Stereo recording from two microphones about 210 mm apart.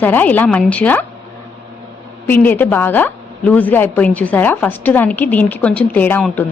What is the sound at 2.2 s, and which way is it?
A woman's voice, 10° left (ahead or behind).